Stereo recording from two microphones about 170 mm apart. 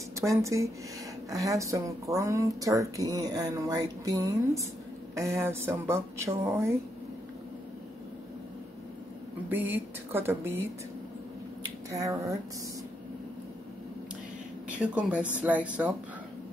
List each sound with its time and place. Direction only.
0.2 s speech: 20° right (ahead or behind)
9.5 s speech: 10° right (ahead or behind)
11.9 s speech: 20° right (ahead or behind)
14.8 s speech: 5° right (ahead or behind)